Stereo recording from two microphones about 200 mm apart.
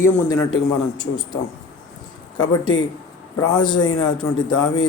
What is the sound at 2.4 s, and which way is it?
A man's voice, 20° left (ahead or behind).